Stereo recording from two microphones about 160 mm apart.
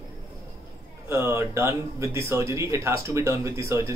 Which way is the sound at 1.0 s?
15° right (ahead or behind).